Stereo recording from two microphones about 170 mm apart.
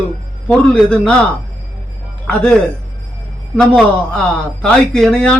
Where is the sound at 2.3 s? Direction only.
10° left (ahead or behind).